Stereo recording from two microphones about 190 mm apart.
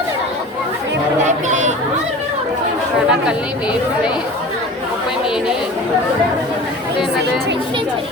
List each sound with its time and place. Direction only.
1.2 s chatter: 40° right (ahead or behind)
3.1 s speech: 5° right (ahead or behind)